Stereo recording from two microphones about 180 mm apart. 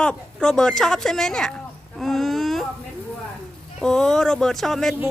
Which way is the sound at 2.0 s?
Centre (ahead or behind).